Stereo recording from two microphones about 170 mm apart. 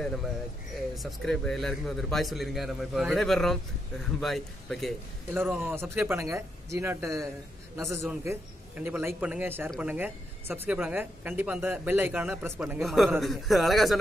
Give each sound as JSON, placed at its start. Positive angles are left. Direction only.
{"t": 0.9, "sound": "a man's voice", "side_deg": 5}
{"t": 5.4, "sound": "a woman's voice", "side_deg": -10}